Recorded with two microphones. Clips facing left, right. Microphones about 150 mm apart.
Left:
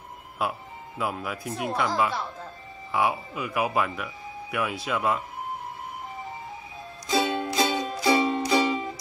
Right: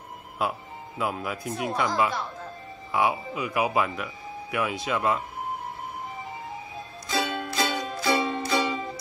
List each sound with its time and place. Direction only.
0.4 s speech: centre (ahead or behind)
7.1 s music: 20° left (ahead or behind)